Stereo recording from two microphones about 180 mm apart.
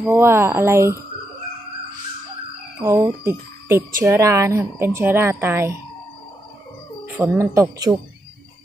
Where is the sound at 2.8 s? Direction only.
15° right (ahead or behind).